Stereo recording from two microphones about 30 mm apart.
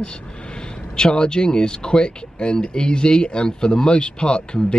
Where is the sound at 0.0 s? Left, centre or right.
Left.